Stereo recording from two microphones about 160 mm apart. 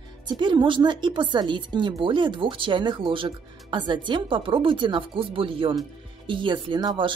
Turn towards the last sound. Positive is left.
turn(degrees=-30)  # may be behind; listen again after turning